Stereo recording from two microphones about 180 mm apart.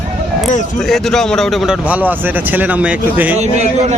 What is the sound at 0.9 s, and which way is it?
A man's voice, centre (ahead or behind).